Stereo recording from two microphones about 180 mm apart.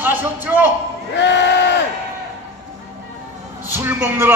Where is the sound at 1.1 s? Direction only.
80° left.